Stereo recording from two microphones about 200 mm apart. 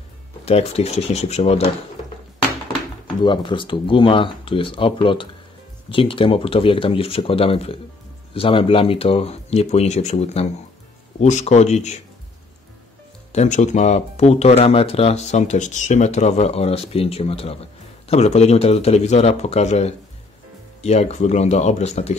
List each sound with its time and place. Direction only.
0.5 s speech: 30° left (ahead or behind)
3.3 s speech: 25° left (ahead or behind)
13.3 s speech: 35° left (ahead or behind)